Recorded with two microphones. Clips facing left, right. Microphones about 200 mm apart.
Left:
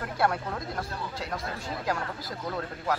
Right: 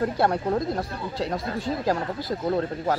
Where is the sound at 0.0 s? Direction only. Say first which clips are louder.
Right 5 dB; 30° right (ahead or behind).